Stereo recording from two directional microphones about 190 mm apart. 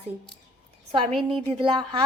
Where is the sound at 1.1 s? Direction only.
Centre (ahead or behind).